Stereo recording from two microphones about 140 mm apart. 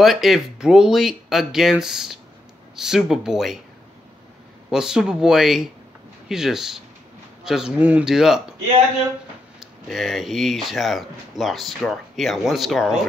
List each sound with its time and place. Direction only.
0.0 s speech: centre (ahead or behind)
4.6 s speech: 5° right (ahead or behind)
9.6 s speech: centre (ahead or behind)